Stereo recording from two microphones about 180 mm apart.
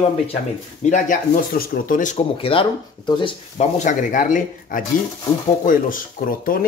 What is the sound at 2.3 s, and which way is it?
Speech, 30° left (ahead or behind).